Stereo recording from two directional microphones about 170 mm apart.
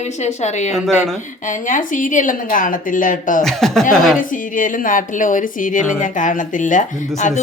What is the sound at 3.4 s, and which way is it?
Speech, centre (ahead or behind).